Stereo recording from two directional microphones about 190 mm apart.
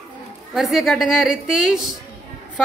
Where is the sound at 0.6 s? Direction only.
Centre (ahead or behind).